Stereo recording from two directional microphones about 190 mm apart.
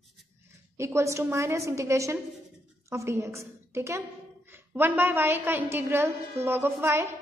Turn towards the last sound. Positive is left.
turn(degrees=-15)  # may be behind; listen again after turning